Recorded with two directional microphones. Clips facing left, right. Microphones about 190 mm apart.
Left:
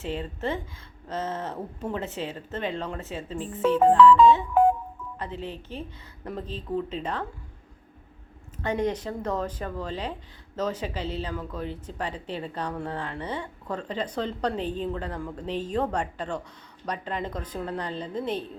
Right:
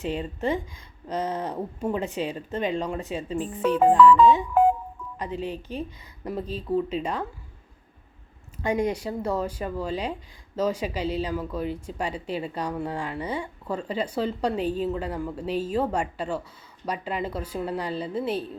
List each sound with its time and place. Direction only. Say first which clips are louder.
0.0 s speech: right 3 dB; 15° right (ahead or behind)
8.6 s speech: right 2 dB; 10° right (ahead or behind)